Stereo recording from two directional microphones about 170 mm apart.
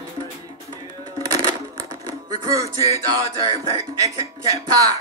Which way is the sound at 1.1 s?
20° right (ahead or behind).